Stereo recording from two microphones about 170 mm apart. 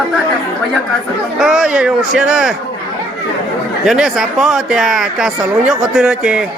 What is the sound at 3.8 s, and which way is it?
Speech, centre (ahead or behind).